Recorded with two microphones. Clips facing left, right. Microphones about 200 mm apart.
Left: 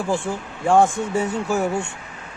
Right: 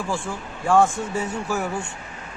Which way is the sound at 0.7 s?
15° left (ahead or behind).